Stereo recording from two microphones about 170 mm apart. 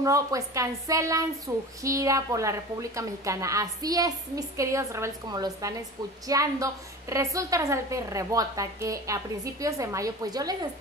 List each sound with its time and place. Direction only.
0.0 s a woman's voice: 20° right (ahead or behind)